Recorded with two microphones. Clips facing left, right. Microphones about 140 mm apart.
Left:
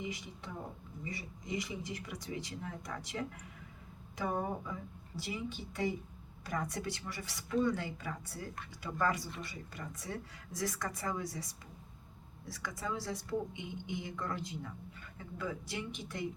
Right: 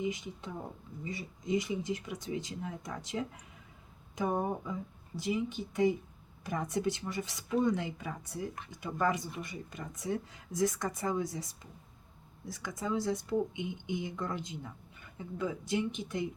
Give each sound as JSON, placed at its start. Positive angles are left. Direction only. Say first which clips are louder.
{"t": 0.0, "sound": "speech", "louder": "right 6 dB", "side_deg": -20}